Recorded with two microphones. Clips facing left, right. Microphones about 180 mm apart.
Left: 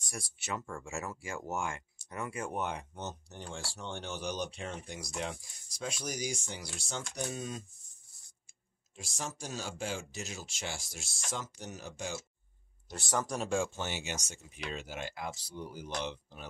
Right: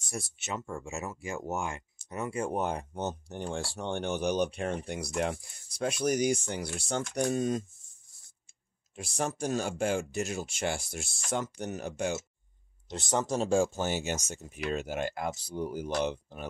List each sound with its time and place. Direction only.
0.0 s speech: 25° right (ahead or behind); by 7.6 s 50° right (ahead or behind)
8.9 s speech: 60° right (ahead or behind)
12.9 s speech: 20° right (ahead or behind); by 16.4 s 50° right (ahead or behind)